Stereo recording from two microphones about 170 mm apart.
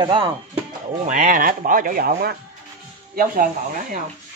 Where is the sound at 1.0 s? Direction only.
50° right (ahead or behind).